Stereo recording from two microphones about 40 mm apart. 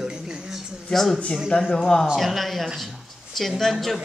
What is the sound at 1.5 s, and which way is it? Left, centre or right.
Speech, left.